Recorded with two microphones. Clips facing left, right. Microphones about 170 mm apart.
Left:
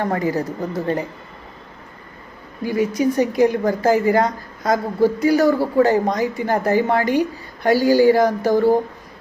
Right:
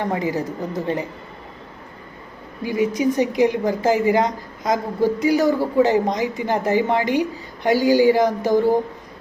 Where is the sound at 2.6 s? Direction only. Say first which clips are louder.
Left 1 dB; 20° right (ahead or behind).